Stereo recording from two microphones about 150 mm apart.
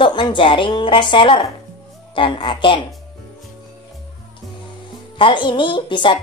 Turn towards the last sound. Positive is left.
turn(degrees=30)  # may be behind; listen again after turning